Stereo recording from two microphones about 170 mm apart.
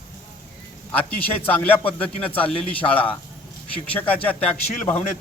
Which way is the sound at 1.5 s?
10° left (ahead or behind).